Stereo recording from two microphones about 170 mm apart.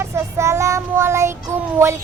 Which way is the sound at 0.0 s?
15° right (ahead or behind).